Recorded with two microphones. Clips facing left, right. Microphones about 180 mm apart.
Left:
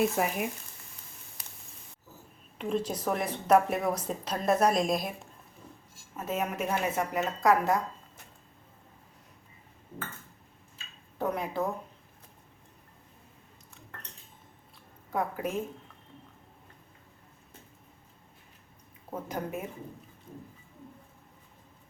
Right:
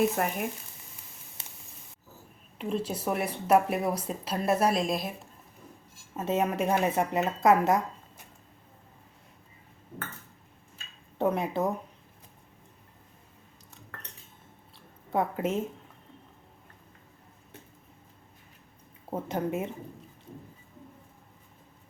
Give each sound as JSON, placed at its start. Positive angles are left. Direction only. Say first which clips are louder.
{"t": 0.2, "sound": "speech", "louder": "even", "side_deg": 5}
{"t": 1.4, "sound": "a sound", "louder": "right 2 dB", "side_deg": -25}
{"t": 2.6, "sound": "speech", "louder": "even", "side_deg": 0}
{"t": 6.1, "sound": "speech", "louder": "right 5 dB", "side_deg": -25}
{"t": 11.2, "sound": "speech", "louder": "right 4 dB", "side_deg": -25}
{"t": 15.1, "sound": "speech", "louder": "right 3 dB", "side_deg": -25}
{"t": 19.1, "sound": "speech", "louder": "right 5 dB", "side_deg": -25}